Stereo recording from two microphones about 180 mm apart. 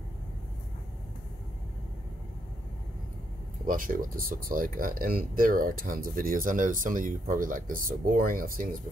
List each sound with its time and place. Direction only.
3.6 s speech: 50° right (ahead or behind)